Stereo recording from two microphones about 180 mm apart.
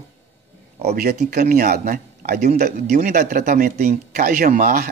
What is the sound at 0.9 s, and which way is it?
Speech, 60° right (ahead or behind).